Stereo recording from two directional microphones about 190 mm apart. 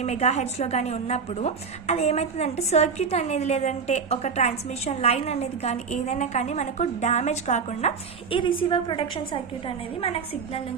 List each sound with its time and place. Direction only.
0.0 s a woman's voice: 35° left (ahead or behind)